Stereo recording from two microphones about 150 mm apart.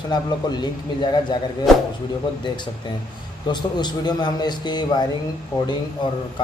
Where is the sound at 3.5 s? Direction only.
30° left (ahead or behind).